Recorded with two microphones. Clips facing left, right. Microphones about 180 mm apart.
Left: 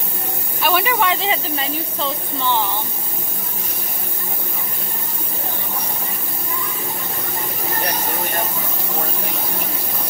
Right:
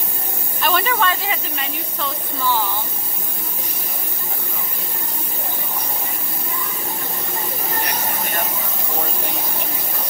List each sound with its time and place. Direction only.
0.6 s a woman's voice: 10° left (ahead or behind); by 2.6 s 25° left (ahead or behind)